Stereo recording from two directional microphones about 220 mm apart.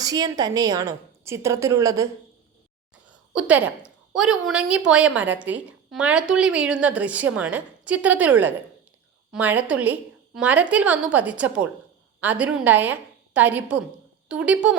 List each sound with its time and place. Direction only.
0.0 s a woman's voice: 15° right (ahead or behind)